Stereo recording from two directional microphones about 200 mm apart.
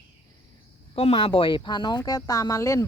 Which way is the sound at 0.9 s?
30° left (ahead or behind).